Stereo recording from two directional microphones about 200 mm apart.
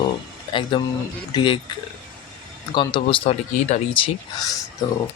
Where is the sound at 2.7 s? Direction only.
20° left (ahead or behind).